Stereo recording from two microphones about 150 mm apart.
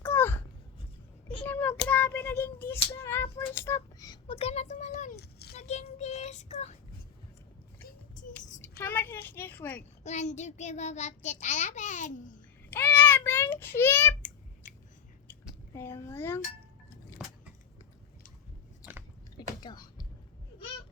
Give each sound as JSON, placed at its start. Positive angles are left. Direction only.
{"t": 0.0, "sound": "a sound", "side_deg": 15}
{"t": 1.5, "sound": "child singing", "side_deg": 10}
{"t": 1.9, "sound": "speech", "side_deg": 10}
{"t": 4.3, "sound": "child singing", "side_deg": 45}
{"t": 5.1, "sound": "a child's voice", "side_deg": 90}
{"t": 5.5, "sound": "child singing", "side_deg": 45}
{"t": 7.8, "sound": "a sound", "side_deg": 75}
{"t": 8.8, "sound": "speech", "side_deg": 15}
{"t": 10.0, "sound": "child singing", "side_deg": 50}
{"t": 12.7, "sound": "a child's voice", "side_deg": 10}
{"t": 15.7, "sound": "speech", "side_deg": 15}
{"t": 17.2, "sound": "a sound", "side_deg": -5}
{"t": 19.4, "sound": "a sound", "side_deg": 30}